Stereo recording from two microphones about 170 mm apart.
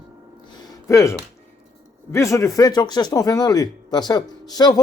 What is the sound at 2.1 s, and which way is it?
Speech, 15° left (ahead or behind).